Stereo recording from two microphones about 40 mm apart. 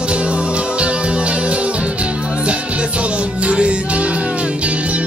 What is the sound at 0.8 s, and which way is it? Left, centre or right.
Music, right.